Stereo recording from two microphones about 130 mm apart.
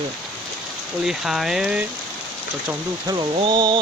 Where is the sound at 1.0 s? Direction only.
5° right (ahead or behind).